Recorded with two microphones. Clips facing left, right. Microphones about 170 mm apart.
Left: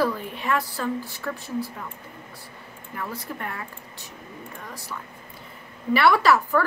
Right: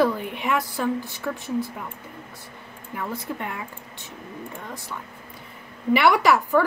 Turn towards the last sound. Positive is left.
turn(degrees=-15)  # may be behind; listen again after turning